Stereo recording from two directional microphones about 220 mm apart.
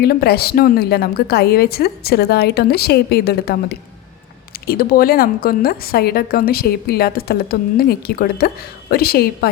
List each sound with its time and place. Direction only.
0.0 s a woman's voice: 45° left (ahead or behind)